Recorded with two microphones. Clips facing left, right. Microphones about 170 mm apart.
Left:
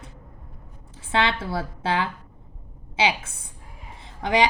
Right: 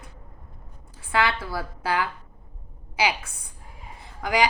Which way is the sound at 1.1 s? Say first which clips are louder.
Left 1 dB; 25° left (ahead or behind).